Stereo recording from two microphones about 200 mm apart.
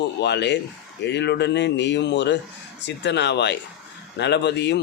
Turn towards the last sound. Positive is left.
turn(degrees=60)  # may be behind; listen again after turning